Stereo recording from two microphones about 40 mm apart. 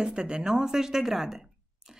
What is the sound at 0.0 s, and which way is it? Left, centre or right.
A woman's voice, centre.